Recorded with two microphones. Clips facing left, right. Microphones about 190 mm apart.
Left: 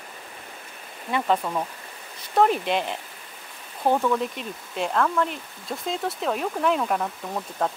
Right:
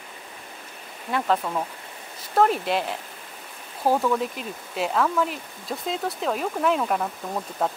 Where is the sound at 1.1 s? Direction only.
5° left (ahead or behind).